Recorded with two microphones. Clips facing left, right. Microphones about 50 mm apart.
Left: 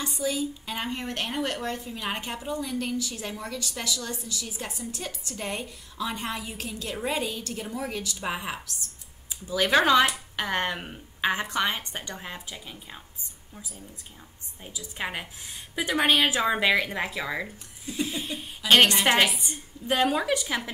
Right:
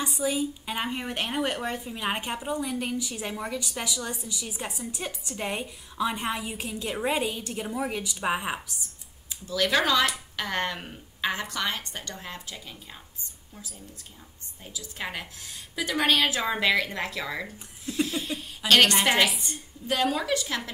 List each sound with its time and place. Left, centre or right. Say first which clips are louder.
0.0 s a woman's voice: right 1 dB; centre
9.5 s speech: left 3 dB; centre
14.6 s a woman's voice: left 2 dB; centre